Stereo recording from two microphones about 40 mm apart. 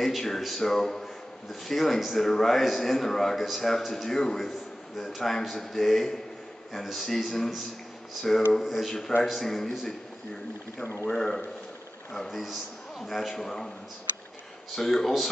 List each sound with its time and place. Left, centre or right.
0.0 s a man's voice: centre
11.1 s a man's voice: centre
12.3 s a man's voice: centre
14.8 s a man's voice: centre